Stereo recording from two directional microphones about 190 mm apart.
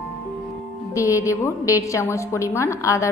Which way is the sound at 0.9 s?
15° left (ahead or behind).